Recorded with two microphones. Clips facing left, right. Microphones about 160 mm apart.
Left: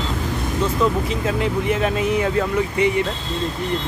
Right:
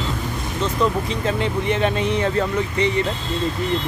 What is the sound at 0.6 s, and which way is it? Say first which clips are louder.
Speech: even; 5° left (ahead or behind).